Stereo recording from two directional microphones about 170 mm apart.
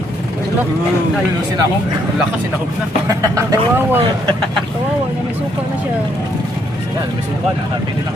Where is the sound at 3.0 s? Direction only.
20° right (ahead or behind).